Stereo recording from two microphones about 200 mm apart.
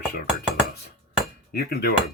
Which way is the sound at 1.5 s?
50° left (ahead or behind).